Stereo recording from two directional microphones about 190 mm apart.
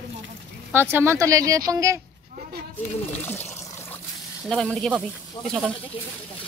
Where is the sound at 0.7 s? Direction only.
10° right (ahead or behind).